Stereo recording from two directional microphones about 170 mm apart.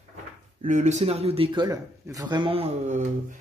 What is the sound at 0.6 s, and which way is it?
A man's voice, 45° right (ahead or behind).